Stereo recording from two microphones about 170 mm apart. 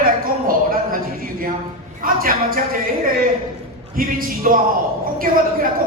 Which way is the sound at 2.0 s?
55° right (ahead or behind).